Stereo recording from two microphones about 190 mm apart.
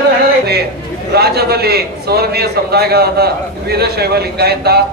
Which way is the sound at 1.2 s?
55° right (ahead or behind).